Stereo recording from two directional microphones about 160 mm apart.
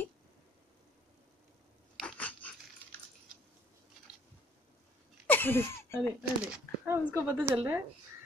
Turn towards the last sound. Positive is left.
turn(degrees=-15)  # may be behind; listen again after turning